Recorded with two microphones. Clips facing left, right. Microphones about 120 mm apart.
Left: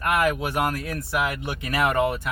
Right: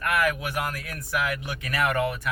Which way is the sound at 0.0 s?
25° left (ahead or behind).